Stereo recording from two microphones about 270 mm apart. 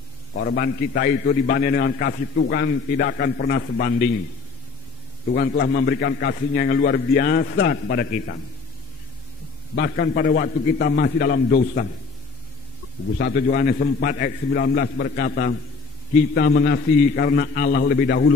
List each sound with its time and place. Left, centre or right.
0.3 s a man's voice: left
5.3 s a man's voice: left
9.8 s a man's voice: left
13.2 s a man's voice: left